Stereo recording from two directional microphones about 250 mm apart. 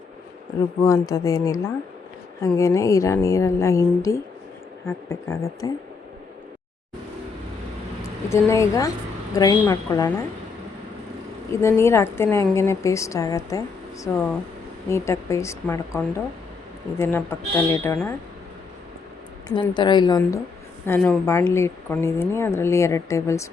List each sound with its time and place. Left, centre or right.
0.8 s a woman's voice: centre
8.3 s a woman's voice: centre
11.6 s a woman's voice: centre
19.5 s a woman's voice: centre